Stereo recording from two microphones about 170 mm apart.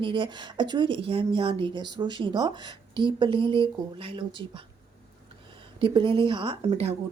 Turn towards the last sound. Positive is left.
turn(degrees=-35)  # may be behind; listen again after turning